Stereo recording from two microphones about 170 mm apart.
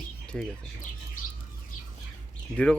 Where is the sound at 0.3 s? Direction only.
5° left (ahead or behind).